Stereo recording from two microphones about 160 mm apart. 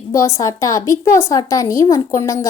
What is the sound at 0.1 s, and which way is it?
A woman's voice, 20° left (ahead or behind).